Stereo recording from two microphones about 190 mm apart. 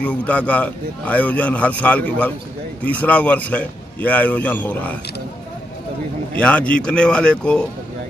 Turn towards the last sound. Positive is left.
turn(degrees=5)  # may be behind; listen again after turning